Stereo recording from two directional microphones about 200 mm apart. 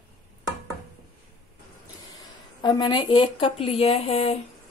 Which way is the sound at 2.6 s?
20° left (ahead or behind).